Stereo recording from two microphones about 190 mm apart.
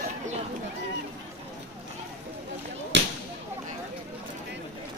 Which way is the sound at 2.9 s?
75° right (ahead or behind).